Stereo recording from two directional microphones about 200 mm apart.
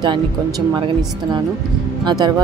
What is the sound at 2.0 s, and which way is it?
Speech, 20° right (ahead or behind).